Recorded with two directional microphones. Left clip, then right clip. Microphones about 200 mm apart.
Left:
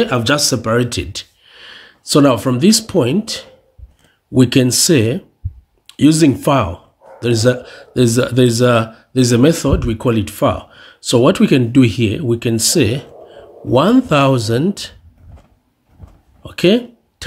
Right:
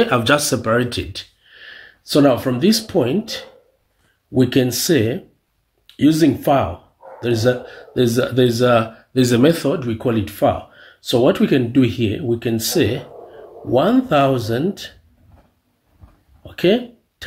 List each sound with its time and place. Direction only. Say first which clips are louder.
0.0 s speech: left 1 dB; 20° left (ahead or behind); by 15.0 s 45° left (ahead or behind)
16.4 s speech: left 3 dB; 50° left (ahead or behind)